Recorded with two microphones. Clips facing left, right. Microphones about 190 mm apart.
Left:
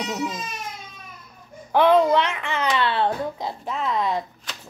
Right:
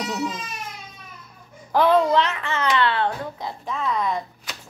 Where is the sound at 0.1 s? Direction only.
10° left (ahead or behind).